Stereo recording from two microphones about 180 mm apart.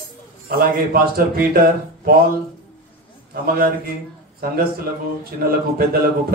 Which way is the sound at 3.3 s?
55° right (ahead or behind).